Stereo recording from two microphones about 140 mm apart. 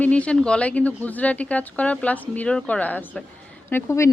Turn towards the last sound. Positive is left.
turn(degrees=15)  # may be behind; listen again after turning